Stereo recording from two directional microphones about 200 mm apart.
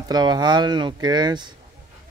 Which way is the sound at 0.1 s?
20° right (ahead or behind).